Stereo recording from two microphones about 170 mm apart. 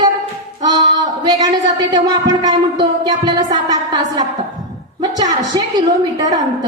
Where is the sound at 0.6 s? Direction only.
25° right (ahead or behind).